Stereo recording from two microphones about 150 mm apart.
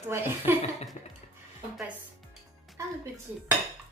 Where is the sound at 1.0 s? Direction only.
50° left (ahead or behind).